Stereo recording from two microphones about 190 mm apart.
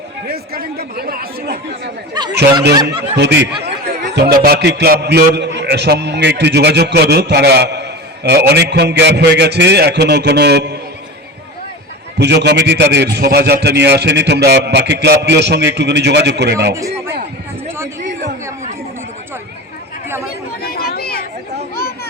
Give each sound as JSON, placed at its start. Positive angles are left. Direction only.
{"t": 0.3, "sound": "speech", "side_deg": -55}
{"t": 2.2, "sound": "speech", "side_deg": -20}
{"t": 2.8, "sound": "speech", "side_deg": -65}
{"t": 12.2, "sound": "speech", "side_deg": -60}
{"t": 20.6, "sound": "chatter", "side_deg": 55}